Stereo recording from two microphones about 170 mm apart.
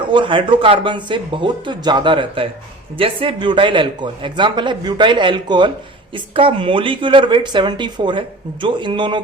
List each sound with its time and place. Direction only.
0.1 s speech: 30° right (ahead or behind)